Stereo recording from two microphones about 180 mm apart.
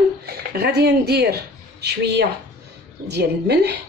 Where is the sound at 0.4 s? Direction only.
60° right (ahead or behind).